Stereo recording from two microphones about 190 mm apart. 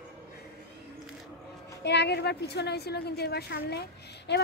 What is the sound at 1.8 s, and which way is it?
A woman's voice, 60° left (ahead or behind).